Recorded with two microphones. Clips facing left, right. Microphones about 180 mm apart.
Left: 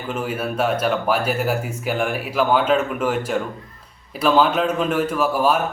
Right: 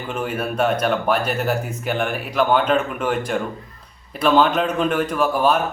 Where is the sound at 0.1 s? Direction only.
5° left (ahead or behind).